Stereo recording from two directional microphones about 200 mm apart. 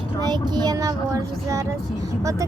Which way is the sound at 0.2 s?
20° right (ahead or behind).